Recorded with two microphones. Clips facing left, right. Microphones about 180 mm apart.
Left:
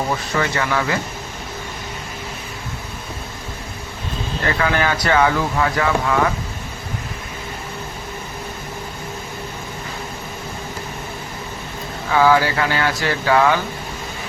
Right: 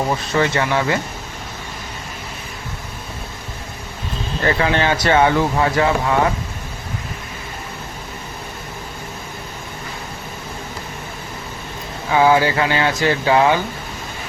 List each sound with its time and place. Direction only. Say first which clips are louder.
0.3 s speech: right 3 dB; 30° right (ahead or behind)
4.4 s speech: right 2 dB; 30° right (ahead or behind)
12.1 s speech: right 1 dB; 20° right (ahead or behind)